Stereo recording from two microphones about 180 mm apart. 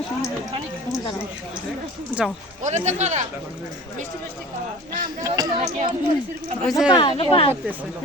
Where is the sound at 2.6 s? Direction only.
40° right (ahead or behind).